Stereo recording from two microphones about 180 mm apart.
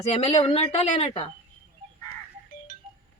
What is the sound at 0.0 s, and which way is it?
A woman's voice, 35° left (ahead or behind).